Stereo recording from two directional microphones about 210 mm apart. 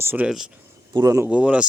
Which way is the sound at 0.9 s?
15° right (ahead or behind).